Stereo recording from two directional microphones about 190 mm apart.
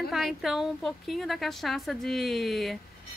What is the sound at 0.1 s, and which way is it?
Speech, centre (ahead or behind).